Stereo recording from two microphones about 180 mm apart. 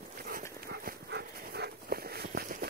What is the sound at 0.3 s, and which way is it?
Dog, 60° right (ahead or behind).